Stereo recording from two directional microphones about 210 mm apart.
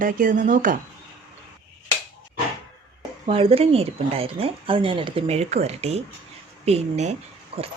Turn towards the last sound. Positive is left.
turn(degrees=-30)  # may be behind; listen again after turning